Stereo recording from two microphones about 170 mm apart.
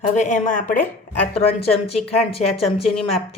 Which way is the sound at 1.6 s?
35° left (ahead or behind).